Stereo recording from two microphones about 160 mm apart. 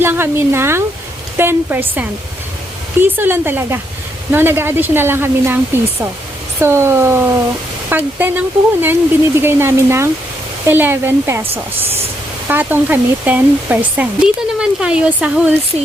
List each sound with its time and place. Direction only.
0.0 s speech: 15° right (ahead or behind)
12.5 s speech: 10° right (ahead or behind)